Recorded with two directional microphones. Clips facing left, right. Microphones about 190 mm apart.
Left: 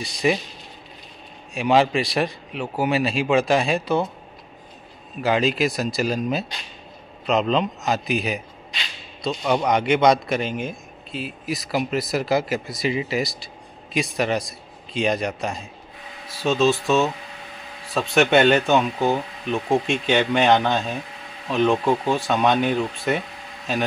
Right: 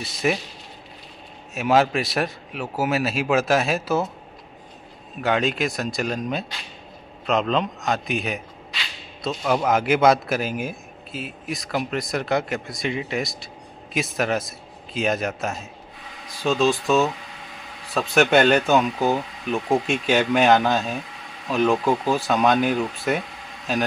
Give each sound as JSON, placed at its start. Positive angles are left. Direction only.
{"t": 0.0, "sound": "a man's voice", "side_deg": 0}
{"t": 1.5, "sound": "a man's voice", "side_deg": 0}
{"t": 5.2, "sound": "a man's voice", "side_deg": 0}